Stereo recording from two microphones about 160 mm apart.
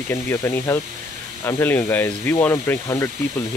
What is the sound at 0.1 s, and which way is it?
Speech, 15° left (ahead or behind).